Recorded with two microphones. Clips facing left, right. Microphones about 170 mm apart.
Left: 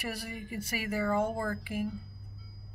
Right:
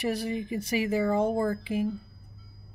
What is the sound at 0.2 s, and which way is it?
Speech, 20° right (ahead or behind).